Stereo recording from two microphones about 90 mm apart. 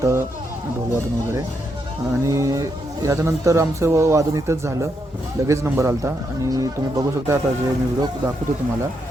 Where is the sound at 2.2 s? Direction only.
35° right (ahead or behind).